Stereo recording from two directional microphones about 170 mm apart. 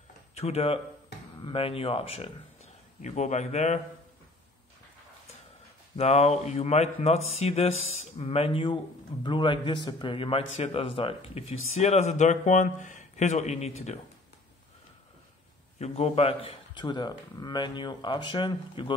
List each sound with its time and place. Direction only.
0.3 s speech: 40° left (ahead or behind)
5.9 s a man's voice: 40° left (ahead or behind)
15.8 s a man's voice: 40° left (ahead or behind)